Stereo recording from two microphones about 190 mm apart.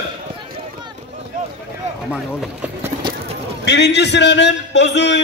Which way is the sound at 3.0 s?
25° right (ahead or behind).